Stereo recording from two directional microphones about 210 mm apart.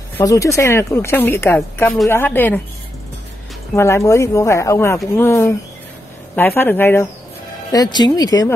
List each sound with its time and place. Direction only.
0.2 s speech: 15° left (ahead or behind)
3.7 s speech: 15° left (ahead or behind)